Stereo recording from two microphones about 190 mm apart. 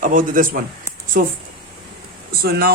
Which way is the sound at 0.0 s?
45° right (ahead or behind).